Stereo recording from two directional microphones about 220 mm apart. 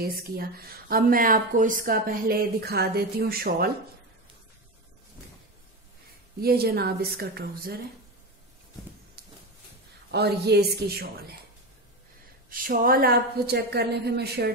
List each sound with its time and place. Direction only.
0.0 s speech: 45° right (ahead or behind)
6.4 s speech: 45° right (ahead or behind)
9.2 s a sound: 45° right (ahead or behind)
10.1 s speech: 50° right (ahead or behind)
12.4 s speech: 40° right (ahead or behind)